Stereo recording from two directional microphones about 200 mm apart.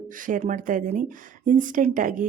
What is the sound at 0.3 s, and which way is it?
A woman's voice, 40° right (ahead or behind).